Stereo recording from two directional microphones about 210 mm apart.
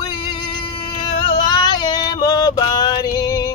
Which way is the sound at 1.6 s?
20° left (ahead or behind).